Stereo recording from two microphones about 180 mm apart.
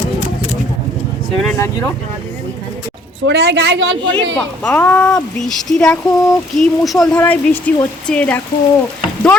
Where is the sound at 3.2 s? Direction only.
70° right (ahead or behind); by 4.0 s 90° right.